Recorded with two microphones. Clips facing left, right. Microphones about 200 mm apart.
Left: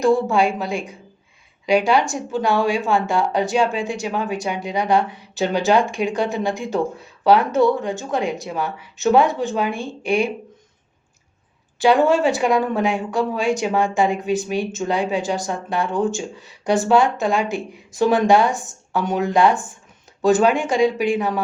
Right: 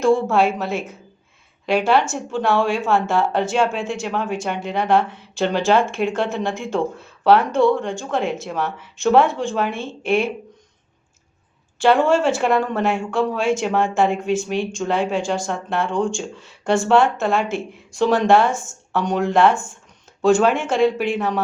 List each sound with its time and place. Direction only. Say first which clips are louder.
0.0 s speech: even; centre (ahead or behind)
11.8 s speech: even; centre (ahead or behind)